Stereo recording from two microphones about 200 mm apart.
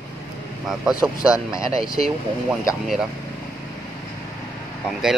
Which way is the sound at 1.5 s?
15° left (ahead or behind).